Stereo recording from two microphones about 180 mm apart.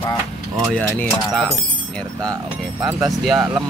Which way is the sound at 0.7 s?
5° left (ahead or behind).